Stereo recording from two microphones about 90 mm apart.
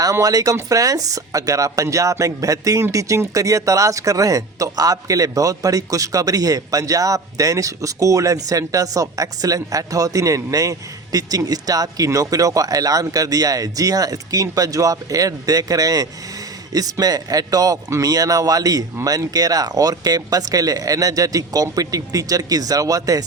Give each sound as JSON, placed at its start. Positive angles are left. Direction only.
{"t": 0.0, "sound": "speech", "side_deg": -40}